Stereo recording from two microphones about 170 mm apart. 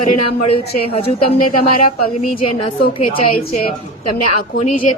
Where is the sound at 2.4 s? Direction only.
35° left (ahead or behind).